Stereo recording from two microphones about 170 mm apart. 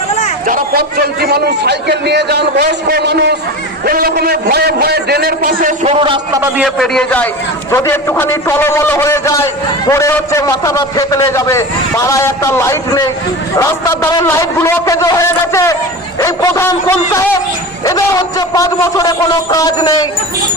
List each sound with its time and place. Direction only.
0.4 s a man's voice: 60° right (ahead or behind); by 3.3 s 80° right
3.8 s a man's voice: 60° right (ahead or behind)
5.8 s a man's voice: 35° right (ahead or behind)
6.6 s a man's voice: centre (ahead or behind); by 20.1 s 20° left (ahead or behind)